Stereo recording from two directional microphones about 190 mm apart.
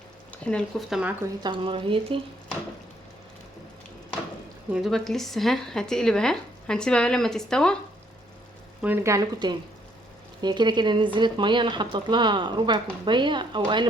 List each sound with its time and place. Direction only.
0.4 s speech: 5° left (ahead or behind)
1.4 s speech: 25° right (ahead or behind)
4.7 s speech: centre (ahead or behind)
8.8 s speech: 10° right (ahead or behind)